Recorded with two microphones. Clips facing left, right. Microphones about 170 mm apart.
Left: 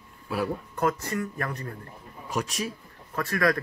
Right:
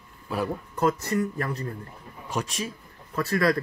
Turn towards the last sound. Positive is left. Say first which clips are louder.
# right 2 dB
turn(degrees=-30)  # may be behind; listen again after turning